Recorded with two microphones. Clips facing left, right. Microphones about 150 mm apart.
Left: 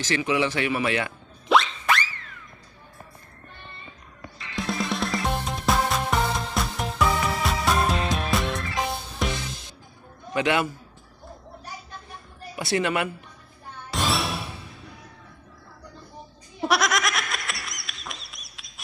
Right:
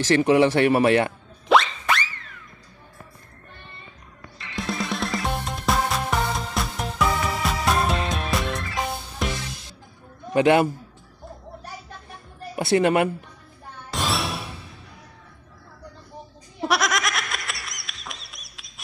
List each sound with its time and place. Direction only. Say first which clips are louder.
0.1 s a man's voice: right 7 dB; 50° right (ahead or behind)
1.5 s music: right 2 dB; centre (ahead or behind)
4.4 s music: even; centre (ahead or behind)
10.3 s a man's voice: right 6 dB; 40° right (ahead or behind)
12.8 s a man's voice: right 8 dB; 40° right (ahead or behind)
13.9 s music: even; centre (ahead or behind)
16.6 s a sound: even; centre (ahead or behind)